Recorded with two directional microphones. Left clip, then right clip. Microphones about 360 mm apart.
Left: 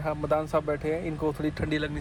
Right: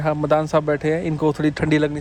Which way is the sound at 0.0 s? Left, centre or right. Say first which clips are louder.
Right 8 dB; right.